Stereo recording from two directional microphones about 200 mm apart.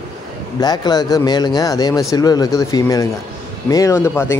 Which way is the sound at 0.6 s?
20° left (ahead or behind).